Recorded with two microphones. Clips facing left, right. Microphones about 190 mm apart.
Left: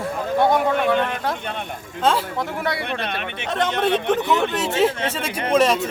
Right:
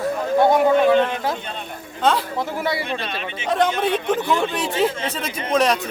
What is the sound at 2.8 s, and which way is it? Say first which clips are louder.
Speech: even; 60° left (ahead or behind).